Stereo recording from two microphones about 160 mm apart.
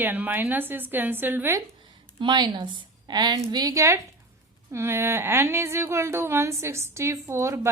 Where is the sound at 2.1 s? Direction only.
25° right (ahead or behind).